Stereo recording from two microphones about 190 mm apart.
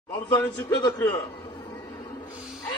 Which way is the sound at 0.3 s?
20° left (ahead or behind).